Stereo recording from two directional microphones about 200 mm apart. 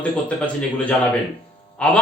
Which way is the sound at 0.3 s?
5° left (ahead or behind).